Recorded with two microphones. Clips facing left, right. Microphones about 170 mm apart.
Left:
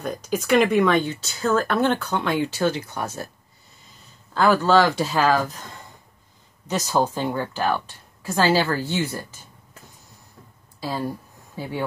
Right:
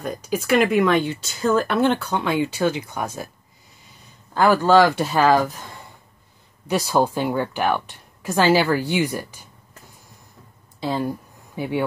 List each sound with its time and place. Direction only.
0.0 s speech: 10° right (ahead or behind)
4.3 s speech: 15° right (ahead or behind)
6.7 s speech: 15° right (ahead or behind)
10.8 s speech: 20° right (ahead or behind)